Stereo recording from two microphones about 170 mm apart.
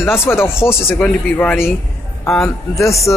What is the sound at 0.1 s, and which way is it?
Speech, 15° left (ahead or behind).